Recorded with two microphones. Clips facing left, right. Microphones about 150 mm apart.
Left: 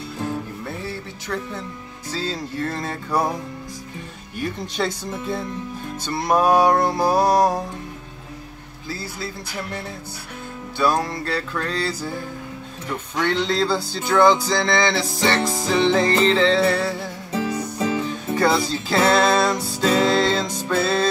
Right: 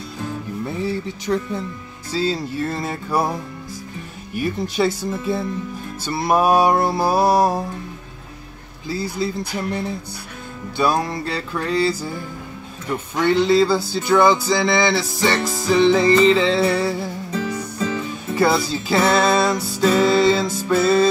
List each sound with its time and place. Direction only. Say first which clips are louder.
0.8 s speech: right 7 dB; 15° right (ahead or behind)
2.1 s music: right 5 dB; 10° right (ahead or behind)
4.4 s music: right 5 dB; 5° right (ahead or behind)
8.8 s music: right 7 dB; 15° right (ahead or behind)
17.4 s music: left 2 dB; 10° left (ahead or behind)
18.3 s music: right 2 dB; 5° right (ahead or behind)